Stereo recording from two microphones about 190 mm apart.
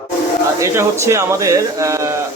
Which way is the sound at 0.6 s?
15° right (ahead or behind).